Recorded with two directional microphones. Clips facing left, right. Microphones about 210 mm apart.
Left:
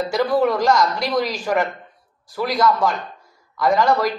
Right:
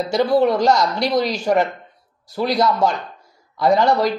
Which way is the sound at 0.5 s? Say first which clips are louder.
Right 1 dB; 25° right (ahead or behind).